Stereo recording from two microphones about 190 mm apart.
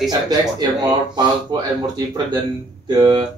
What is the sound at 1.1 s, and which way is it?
Speech, 20° right (ahead or behind).